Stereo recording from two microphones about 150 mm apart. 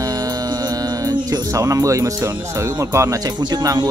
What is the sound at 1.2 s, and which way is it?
Speech, 25° right (ahead or behind).